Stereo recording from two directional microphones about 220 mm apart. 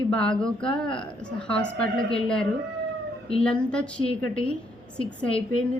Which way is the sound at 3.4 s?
5° left (ahead or behind).